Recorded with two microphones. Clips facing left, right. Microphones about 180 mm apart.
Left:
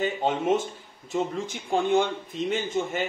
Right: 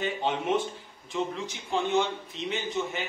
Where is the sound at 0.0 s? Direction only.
45° left (ahead or behind).